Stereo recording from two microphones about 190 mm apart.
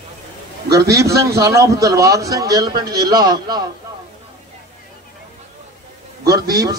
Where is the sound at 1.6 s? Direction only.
15° right (ahead or behind).